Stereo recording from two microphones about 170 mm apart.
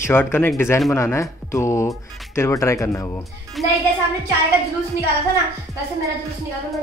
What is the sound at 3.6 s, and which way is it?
Speech, centre (ahead or behind).